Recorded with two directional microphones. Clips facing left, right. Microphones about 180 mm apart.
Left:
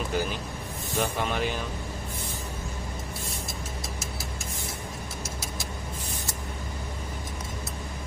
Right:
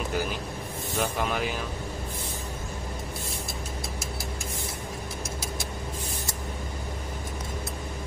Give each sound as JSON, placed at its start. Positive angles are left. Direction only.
{"t": 0.1, "sound": "speech", "side_deg": 0}